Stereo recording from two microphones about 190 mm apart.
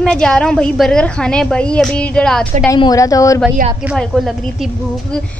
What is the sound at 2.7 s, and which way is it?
Speech, 20° left (ahead or behind).